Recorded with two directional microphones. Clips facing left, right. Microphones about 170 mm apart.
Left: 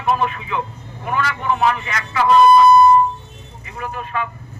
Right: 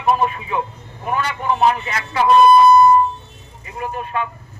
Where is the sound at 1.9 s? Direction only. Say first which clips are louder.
Right 1 dB; 30° right (ahead or behind).